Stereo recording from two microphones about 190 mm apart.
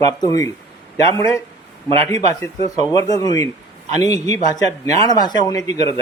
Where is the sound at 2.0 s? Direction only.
20° left (ahead or behind).